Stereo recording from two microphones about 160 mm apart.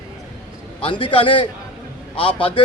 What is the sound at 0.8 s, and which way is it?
A man's voice, 30° left (ahead or behind).